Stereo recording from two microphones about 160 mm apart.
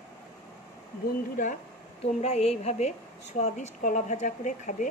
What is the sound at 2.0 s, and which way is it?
Speech, 40° left (ahead or behind).